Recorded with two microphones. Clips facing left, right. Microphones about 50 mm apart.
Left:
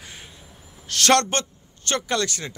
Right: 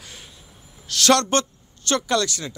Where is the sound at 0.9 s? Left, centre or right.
Left.